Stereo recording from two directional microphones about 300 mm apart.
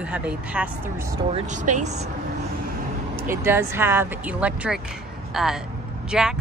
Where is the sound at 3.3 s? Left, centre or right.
Centre.